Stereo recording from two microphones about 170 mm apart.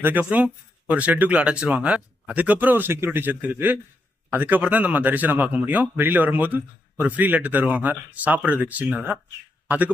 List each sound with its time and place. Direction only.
0.0 s a man's voice: 10° right (ahead or behind)